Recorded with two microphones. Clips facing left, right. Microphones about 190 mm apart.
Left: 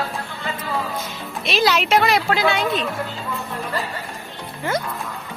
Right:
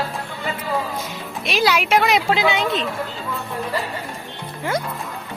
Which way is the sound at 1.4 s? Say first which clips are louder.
Even; 10° right (ahead or behind).